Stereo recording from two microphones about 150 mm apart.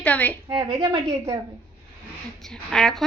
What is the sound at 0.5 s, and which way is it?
Speech, 30° right (ahead or behind).